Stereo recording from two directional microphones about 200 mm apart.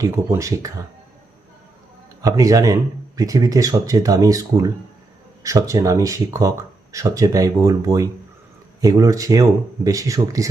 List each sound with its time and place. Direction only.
0.0 s speech: 15° right (ahead or behind)
2.2 s speech: 15° right (ahead or behind)